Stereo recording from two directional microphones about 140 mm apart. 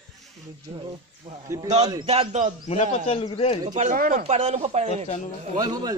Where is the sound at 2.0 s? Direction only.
45° right (ahead or behind).